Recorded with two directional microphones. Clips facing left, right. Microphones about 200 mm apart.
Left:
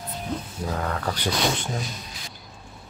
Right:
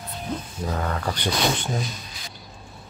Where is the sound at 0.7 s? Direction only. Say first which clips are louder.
Right 1 dB; centre (ahead or behind).